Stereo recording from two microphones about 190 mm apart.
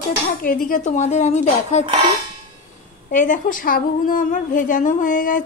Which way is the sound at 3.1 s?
45° left (ahead or behind).